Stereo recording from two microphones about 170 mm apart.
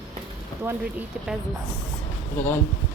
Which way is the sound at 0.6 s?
10° right (ahead or behind).